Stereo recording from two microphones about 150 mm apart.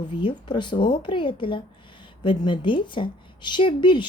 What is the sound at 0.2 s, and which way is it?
A woman's voice, 35° left (ahead or behind).